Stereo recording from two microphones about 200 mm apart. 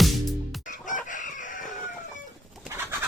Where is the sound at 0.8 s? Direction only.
40° left (ahead or behind).